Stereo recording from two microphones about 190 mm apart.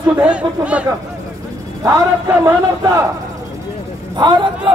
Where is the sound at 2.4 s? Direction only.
20° right (ahead or behind).